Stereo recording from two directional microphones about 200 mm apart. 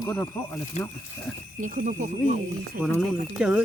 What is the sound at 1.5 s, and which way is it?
Speech, 40° right (ahead or behind).